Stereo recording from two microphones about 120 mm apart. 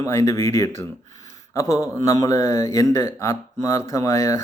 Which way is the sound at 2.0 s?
25° left (ahead or behind).